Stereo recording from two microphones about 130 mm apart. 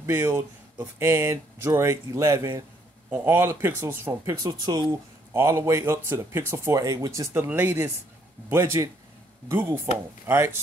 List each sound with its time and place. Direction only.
0.0 s speech: 20° right (ahead or behind)